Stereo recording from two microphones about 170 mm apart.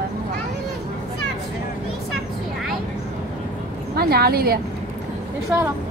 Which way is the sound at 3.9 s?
65° right (ahead or behind).